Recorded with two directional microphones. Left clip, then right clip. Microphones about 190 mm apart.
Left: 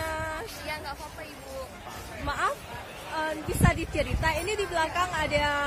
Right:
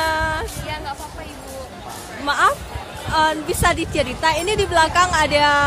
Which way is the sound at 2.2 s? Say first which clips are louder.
Right 12 dB; 10° right (ahead or behind).